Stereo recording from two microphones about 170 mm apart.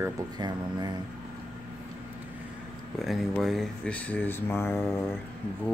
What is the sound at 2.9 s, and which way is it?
Speech, centre (ahead or behind).